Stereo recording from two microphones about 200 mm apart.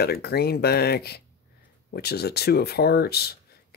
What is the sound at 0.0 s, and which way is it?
Speech, 50° left (ahead or behind).